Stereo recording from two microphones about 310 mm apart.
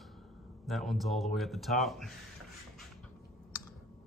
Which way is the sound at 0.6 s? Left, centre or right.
Centre.